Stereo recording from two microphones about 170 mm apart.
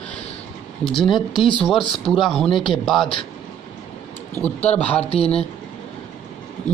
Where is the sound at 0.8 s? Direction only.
30° left (ahead or behind).